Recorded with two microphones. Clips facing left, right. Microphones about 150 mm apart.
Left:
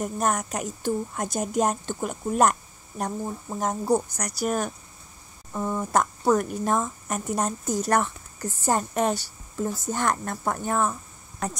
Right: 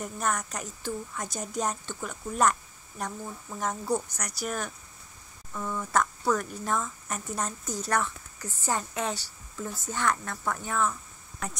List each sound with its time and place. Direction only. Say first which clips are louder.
0.0 s a woman's voice: left 5 dB; 45° left (ahead or behind)
3.1 s a woman's voice: left 7 dB; 35° left (ahead or behind)